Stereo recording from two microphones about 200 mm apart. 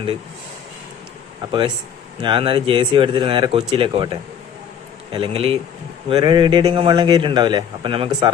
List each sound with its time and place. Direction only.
1.4 s a man's voice: 20° right (ahead or behind)